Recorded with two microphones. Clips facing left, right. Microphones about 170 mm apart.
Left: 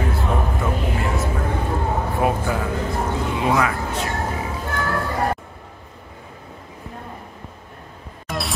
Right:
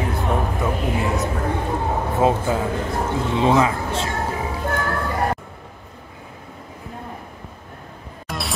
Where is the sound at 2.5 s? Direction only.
25° right (ahead or behind).